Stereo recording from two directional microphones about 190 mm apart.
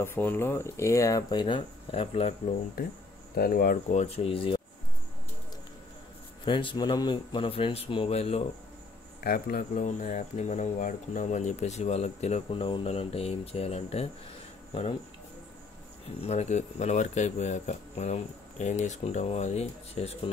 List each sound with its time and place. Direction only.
0.0 s speech: 10° left (ahead or behind); by 2.3 s 30° left (ahead or behind)
3.3 s speech: 50° left (ahead or behind); by 4.6 s 30° left (ahead or behind)
6.4 s speech: 25° left (ahead or behind)
9.2 s speech: 50° left (ahead or behind); by 15.0 s 30° left (ahead or behind)
16.2 s speech: 35° left (ahead or behind)